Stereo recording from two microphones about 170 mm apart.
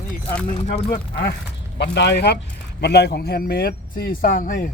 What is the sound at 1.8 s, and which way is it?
Speech, 90° left.